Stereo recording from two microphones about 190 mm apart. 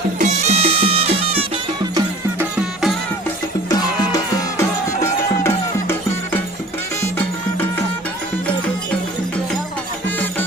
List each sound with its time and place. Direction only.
0.2 s music: 35° right (ahead or behind)
2.4 s music: 5° right (ahead or behind)
3.7 s music: 20° left (ahead or behind)